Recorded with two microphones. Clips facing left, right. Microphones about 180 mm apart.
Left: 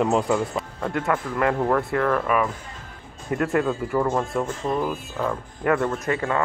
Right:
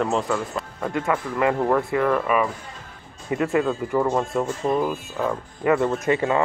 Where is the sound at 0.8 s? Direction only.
5° right (ahead or behind).